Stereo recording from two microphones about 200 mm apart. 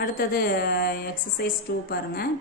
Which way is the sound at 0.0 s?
50° left (ahead or behind).